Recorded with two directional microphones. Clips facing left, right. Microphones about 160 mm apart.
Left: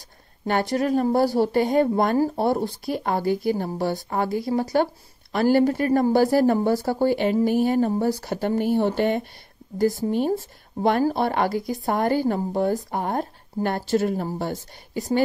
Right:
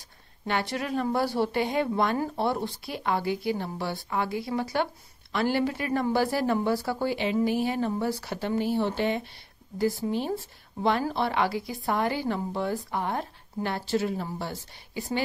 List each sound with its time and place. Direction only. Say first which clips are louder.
0.5 s speech: left 7 dB; 40° left (ahead or behind)